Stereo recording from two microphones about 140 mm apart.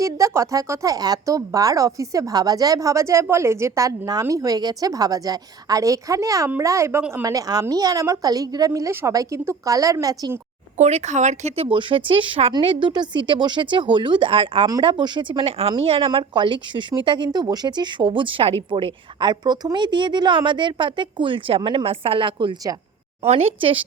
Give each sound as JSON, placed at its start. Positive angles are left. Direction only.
{"t": 0.0, "sound": "a woman's voice", "side_deg": -20}
{"t": 10.8, "sound": "speech", "side_deg": -55}
{"t": 23.2, "sound": "speech", "side_deg": -50}